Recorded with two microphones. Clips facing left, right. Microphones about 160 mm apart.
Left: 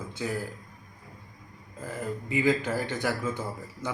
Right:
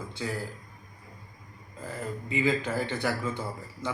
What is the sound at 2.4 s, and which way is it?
A man's voice, 10° left (ahead or behind).